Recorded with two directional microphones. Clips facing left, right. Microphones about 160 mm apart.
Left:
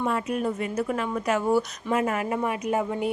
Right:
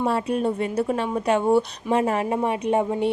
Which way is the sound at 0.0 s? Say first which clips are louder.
Right 4 dB; 30° right (ahead or behind).